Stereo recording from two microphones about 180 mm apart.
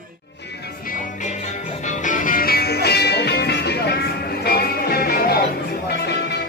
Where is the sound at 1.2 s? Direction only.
40° left (ahead or behind); by 6.4 s 65° left (ahead or behind).